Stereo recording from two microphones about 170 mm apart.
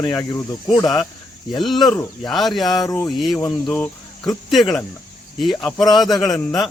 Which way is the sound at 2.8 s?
15° left (ahead or behind).